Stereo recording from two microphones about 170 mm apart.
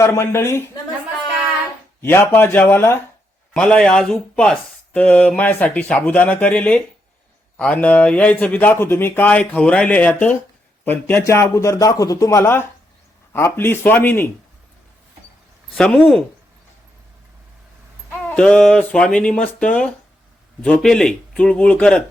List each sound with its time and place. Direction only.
0.0 s speech: 15° left (ahead or behind)
2.0 s speech: 15° left (ahead or behind)
15.7 s speech: 5° left (ahead or behind)
18.1 s speech: 5° left (ahead or behind)